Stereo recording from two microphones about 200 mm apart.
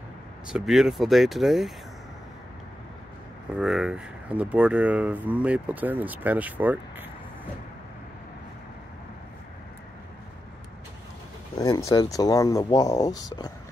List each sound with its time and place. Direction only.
0.5 s speech: 5° right (ahead or behind)
3.5 s speech: 5° right (ahead or behind)
11.5 s speech: 20° left (ahead or behind)